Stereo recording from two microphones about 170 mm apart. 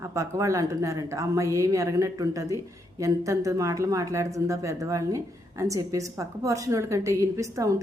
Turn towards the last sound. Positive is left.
turn(degrees=-20)  # may be behind; listen again after turning